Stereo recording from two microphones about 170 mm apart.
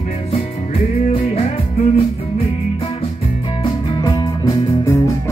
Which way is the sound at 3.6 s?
30° left (ahead or behind).